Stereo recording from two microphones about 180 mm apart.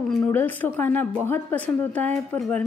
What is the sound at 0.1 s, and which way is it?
A woman's voice, 10° left (ahead or behind).